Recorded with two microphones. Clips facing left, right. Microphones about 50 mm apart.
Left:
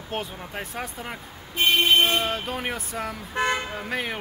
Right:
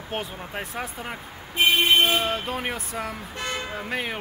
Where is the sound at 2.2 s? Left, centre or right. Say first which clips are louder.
Right 1 dB; centre.